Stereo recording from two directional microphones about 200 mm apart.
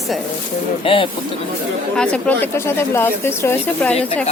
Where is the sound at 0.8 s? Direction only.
25° left (ahead or behind).